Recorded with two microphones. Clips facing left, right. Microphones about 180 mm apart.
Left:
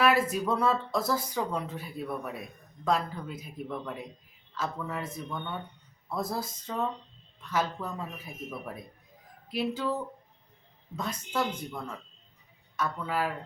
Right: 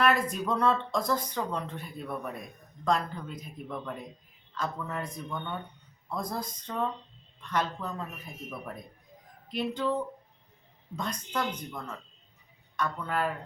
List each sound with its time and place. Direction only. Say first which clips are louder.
0.0 s a woman's voice: left 1 dB; 5° left (ahead or behind)